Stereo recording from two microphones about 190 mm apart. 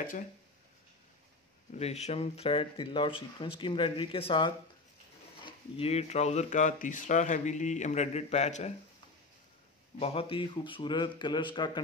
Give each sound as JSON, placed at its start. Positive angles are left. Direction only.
{"t": 1.7, "sound": "speech", "side_deg": 35}
{"t": 9.9, "sound": "speech", "side_deg": 30}